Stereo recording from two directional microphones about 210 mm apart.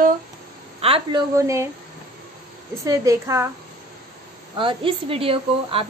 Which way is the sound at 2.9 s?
15° right (ahead or behind).